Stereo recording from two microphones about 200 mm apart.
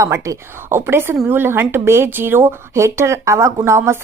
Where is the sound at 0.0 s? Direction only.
15° right (ahead or behind).